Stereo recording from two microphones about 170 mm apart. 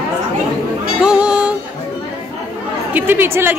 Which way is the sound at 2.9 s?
10° right (ahead or behind).